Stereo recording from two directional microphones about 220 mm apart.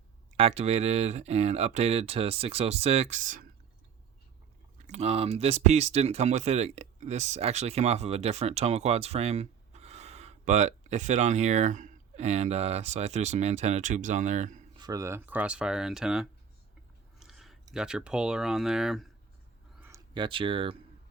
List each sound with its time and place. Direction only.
0.3 s speech: 25° right (ahead or behind)
4.9 s speech: 30° right (ahead or behind)
14.8 s speech: 15° right (ahead or behind)
19.8 s speech: 15° right (ahead or behind)